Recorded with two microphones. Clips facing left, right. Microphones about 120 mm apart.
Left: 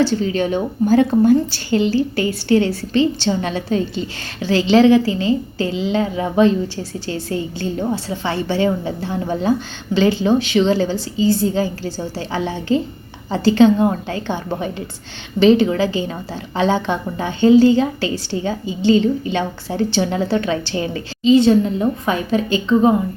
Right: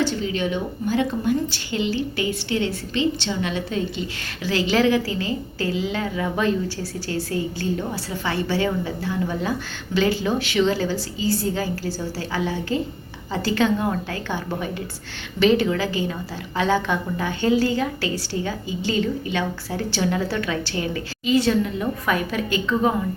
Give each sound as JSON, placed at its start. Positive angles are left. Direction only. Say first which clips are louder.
{"t": 0.0, "sound": "a woman's voice", "louder": "left 6 dB", "side_deg": 40}